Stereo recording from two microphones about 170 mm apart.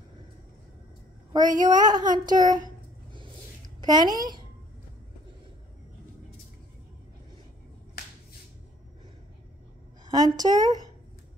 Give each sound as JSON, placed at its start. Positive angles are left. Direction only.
{"t": 1.3, "sound": "a woman's voice", "side_deg": -20}
{"t": 1.8, "sound": "a sound", "side_deg": -50}
{"t": 2.1, "sound": "a woman's voice", "side_deg": -25}
{"t": 3.8, "sound": "a woman's voice", "side_deg": -25}
{"t": 10.1, "sound": "a woman's voice", "side_deg": -20}